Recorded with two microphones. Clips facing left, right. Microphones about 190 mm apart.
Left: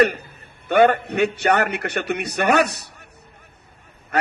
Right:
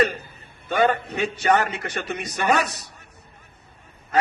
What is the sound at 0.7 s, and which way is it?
A man's voice, 65° left (ahead or behind).